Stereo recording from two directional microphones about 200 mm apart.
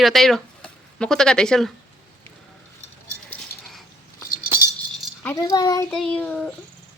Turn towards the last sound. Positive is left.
turn(degrees=5)  # may be behind; listen again after turning